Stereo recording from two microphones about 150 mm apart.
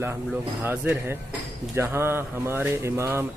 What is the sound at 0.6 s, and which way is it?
Speech, 15° right (ahead or behind).